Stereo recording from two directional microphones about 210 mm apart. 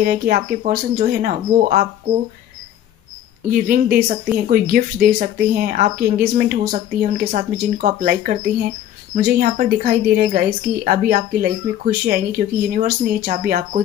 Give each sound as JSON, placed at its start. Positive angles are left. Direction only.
{"t": 0.0, "sound": "speech", "side_deg": -45}
{"t": 3.4, "sound": "speech", "side_deg": -40}